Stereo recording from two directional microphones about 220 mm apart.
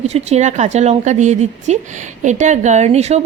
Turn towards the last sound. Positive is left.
turn(degrees=-30)  # may be behind; listen again after turning